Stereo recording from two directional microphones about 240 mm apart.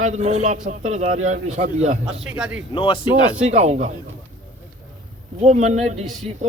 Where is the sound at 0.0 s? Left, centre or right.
Right.